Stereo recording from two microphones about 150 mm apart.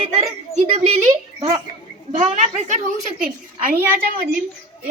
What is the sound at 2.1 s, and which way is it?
Speech, 55° right (ahead or behind).